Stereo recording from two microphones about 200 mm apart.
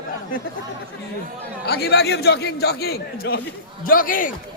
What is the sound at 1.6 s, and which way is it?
A man's voice, 55° left (ahead or behind).